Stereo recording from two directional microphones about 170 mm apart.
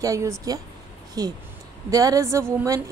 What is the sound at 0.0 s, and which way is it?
A woman's voice, 20° right (ahead or behind).